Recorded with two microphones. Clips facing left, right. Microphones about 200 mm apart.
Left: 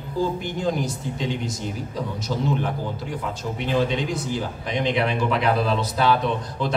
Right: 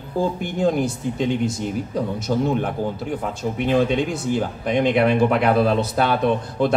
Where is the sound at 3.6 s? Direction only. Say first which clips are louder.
Right 4 dB; 55° right (ahead or behind).